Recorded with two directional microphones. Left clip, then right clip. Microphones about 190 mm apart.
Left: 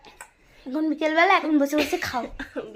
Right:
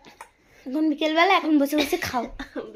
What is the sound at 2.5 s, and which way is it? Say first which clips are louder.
Speech: even; 15° right (ahead or behind).